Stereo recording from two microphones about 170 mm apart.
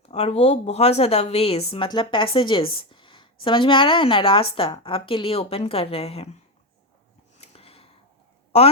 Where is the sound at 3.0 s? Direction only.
30° left (ahead or behind).